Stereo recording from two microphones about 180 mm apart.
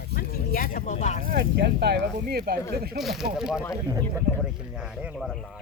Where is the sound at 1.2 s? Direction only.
55° right (ahead or behind).